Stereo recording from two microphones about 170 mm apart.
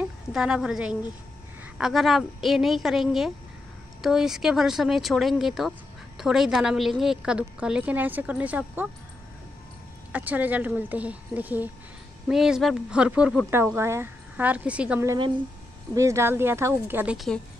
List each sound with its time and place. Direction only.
0.0 s a woman's voice: 5° right (ahead or behind)
10.1 s a woman's voice: 10° right (ahead or behind)
15.0 s speech: 30° right (ahead or behind)
15.9 s speech: 15° right (ahead or behind)